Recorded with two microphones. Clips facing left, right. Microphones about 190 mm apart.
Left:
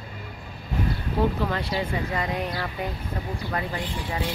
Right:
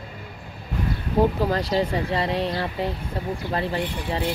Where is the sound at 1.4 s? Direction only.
35° right (ahead or behind).